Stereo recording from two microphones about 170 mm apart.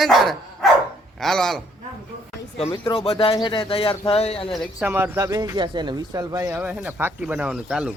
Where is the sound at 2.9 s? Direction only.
35° left (ahead or behind).